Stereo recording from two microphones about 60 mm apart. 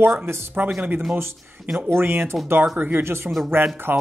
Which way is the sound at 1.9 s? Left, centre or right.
Right.